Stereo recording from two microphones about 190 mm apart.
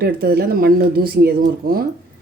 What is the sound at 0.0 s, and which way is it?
Speech, 55° right (ahead or behind).